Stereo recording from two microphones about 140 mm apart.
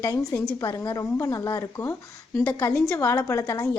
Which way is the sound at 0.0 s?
25° left (ahead or behind).